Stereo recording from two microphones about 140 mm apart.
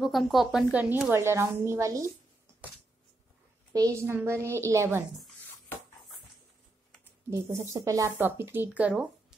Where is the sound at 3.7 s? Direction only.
20° right (ahead or behind).